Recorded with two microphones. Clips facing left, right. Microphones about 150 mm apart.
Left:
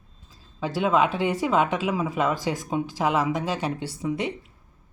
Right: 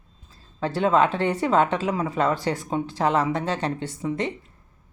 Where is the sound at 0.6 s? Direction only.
5° left (ahead or behind).